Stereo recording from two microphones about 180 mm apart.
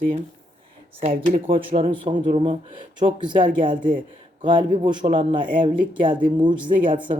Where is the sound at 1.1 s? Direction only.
50° right (ahead or behind).